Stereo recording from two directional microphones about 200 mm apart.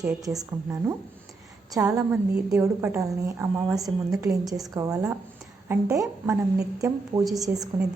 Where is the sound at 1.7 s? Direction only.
15° right (ahead or behind).